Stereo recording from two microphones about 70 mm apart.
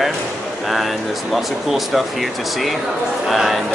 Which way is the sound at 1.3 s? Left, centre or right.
Centre.